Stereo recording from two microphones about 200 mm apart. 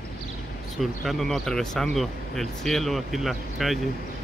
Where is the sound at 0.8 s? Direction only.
Centre (ahead or behind).